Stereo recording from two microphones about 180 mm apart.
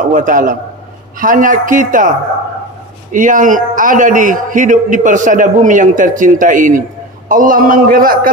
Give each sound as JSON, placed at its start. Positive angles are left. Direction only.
{"t": 0.0, "sound": "a man's voice", "side_deg": -45}